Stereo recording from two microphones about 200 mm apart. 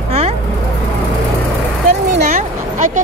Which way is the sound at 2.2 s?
35° right (ahead or behind).